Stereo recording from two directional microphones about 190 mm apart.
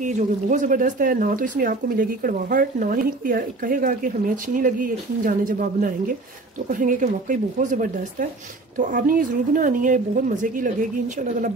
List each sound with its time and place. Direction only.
0.0 s speech: 40° right (ahead or behind)